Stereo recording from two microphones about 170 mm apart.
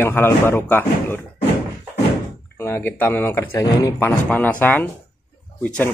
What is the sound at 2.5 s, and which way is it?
Speech, 10° left (ahead or behind).